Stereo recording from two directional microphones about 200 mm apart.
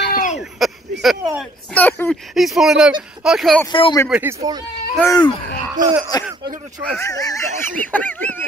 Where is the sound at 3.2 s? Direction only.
Centre (ahead or behind).